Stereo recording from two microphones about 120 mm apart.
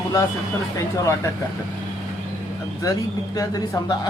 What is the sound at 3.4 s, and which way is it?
Speech, 30° left (ahead or behind).